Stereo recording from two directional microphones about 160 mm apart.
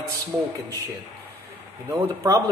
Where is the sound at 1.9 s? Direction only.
20° right (ahead or behind).